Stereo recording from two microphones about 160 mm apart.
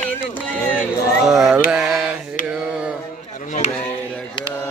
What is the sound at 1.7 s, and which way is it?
Mantra, centre (ahead or behind).